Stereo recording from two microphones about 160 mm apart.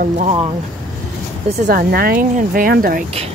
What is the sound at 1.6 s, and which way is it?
Speech, 75° right (ahead or behind).